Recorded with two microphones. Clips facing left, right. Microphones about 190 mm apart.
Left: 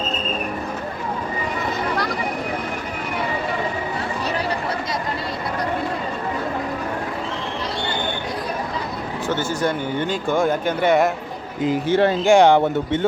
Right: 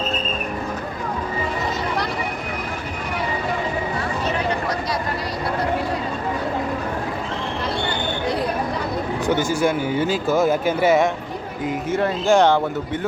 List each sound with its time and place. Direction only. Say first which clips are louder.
9.2 s speech: right 2 dB; 15° right (ahead or behind)
11.6 s speech: left 5 dB; 30° left (ahead or behind)
12.3 s speech: left 2 dB; 15° left (ahead or behind)
12.6 s speech: left 4 dB; 25° left (ahead or behind)